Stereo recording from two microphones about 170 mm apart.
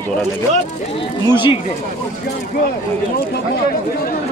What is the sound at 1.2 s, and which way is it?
Speech, 30° left (ahead or behind).